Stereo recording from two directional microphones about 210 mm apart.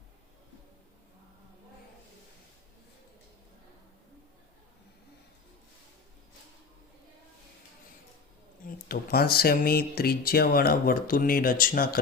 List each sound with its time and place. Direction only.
8.6 s speech: 45° left (ahead or behind)